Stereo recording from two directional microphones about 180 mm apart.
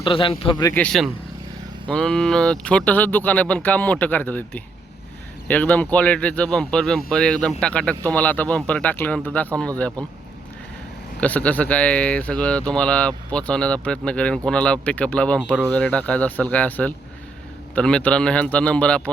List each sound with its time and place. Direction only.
0.0 s a man's voice: 30° left (ahead or behind)
0.7 s speech: 5° left (ahead or behind)
11.2 s speech: 10° left (ahead or behind)